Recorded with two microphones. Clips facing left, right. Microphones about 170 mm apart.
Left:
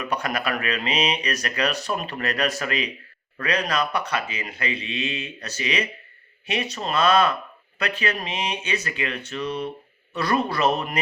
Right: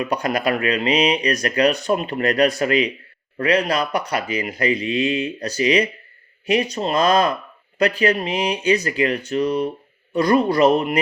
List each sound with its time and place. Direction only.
0.0 s speech: 35° right (ahead or behind)